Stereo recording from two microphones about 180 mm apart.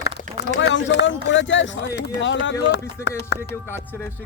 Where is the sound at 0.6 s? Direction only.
75° left (ahead or behind).